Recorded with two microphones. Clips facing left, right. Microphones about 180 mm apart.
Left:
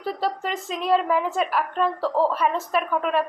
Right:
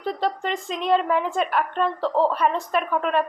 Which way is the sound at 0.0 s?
5° left (ahead or behind).